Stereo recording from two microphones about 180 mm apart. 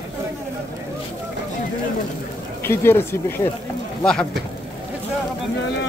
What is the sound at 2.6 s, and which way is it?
Speech, 15° left (ahead or behind).